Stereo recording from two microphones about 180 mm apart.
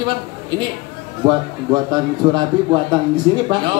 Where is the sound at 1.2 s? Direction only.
25° right (ahead or behind).